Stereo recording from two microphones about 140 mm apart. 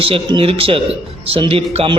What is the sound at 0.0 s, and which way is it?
A man's voice, 40° right (ahead or behind).